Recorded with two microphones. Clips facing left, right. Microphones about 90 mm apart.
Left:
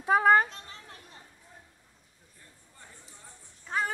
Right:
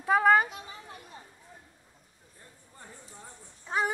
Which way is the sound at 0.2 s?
5° right (ahead or behind).